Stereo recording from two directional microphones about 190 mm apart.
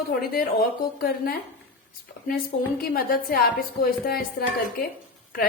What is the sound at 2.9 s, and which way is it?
A woman's voice, 50° left (ahead or behind).